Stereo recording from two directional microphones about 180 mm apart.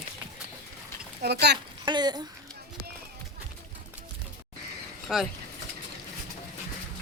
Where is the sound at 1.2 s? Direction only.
65° right (ahead or behind).